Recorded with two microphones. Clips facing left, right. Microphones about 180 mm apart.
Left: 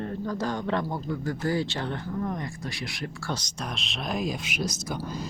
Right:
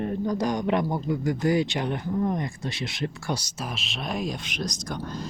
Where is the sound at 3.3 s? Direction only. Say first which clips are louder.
Right 2 dB; 5° right (ahead or behind).